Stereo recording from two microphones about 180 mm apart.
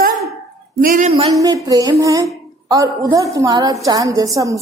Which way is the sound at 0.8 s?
45° right (ahead or behind).